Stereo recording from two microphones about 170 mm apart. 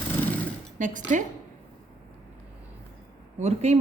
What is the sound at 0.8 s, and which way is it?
Speech, 50° right (ahead or behind).